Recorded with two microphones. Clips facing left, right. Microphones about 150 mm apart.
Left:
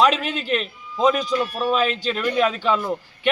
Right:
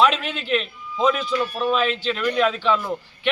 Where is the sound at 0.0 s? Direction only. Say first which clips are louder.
Left 1 dB; 45° left (ahead or behind).